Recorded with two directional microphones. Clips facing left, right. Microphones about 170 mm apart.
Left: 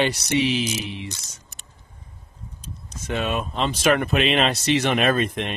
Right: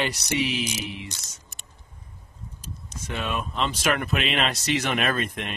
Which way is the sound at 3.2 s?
25° left (ahead or behind).